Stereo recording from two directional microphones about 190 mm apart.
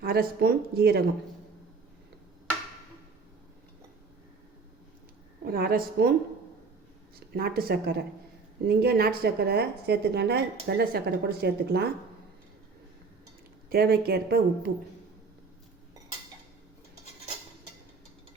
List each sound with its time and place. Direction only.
0.0 s speech: 50° right (ahead or behind)
5.5 s speech: 50° right (ahead or behind)
7.3 s a woman's voice: 55° right (ahead or behind)
13.7 s a woman's voice: 55° right (ahead or behind)